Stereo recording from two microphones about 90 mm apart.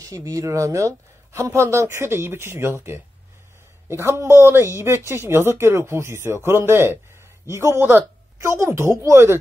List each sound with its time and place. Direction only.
0.0 s speech: 40° right (ahead or behind)